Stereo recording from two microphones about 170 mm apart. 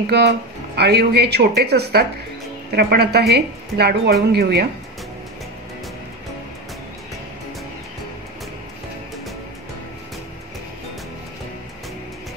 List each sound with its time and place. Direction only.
0.0 s speech: 75° right (ahead or behind)